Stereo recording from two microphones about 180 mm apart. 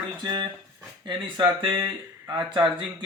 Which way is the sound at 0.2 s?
25° right (ahead or behind).